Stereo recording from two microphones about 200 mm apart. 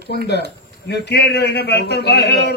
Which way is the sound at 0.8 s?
55° left (ahead or behind).